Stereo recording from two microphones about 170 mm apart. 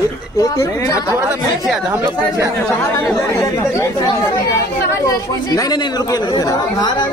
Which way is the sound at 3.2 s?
15° left (ahead or behind).